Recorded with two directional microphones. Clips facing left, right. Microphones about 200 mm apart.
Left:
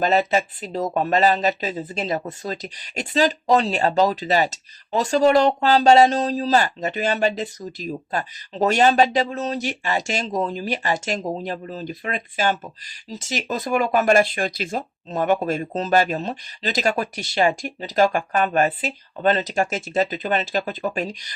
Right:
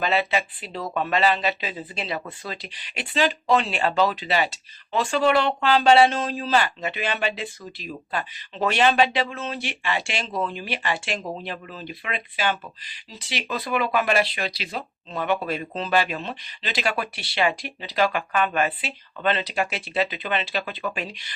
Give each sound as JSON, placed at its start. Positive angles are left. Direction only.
{"t": 0.0, "sound": "speech", "side_deg": 40}